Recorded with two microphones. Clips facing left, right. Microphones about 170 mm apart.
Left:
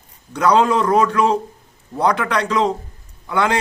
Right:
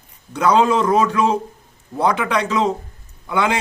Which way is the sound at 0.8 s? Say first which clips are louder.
Left 1 dB; centre (ahead or behind).